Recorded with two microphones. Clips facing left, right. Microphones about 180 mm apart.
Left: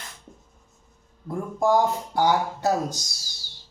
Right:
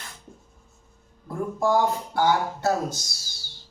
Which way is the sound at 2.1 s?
15° left (ahead or behind).